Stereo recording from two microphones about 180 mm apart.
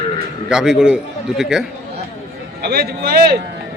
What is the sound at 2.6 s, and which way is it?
Speech, 60° right (ahead or behind).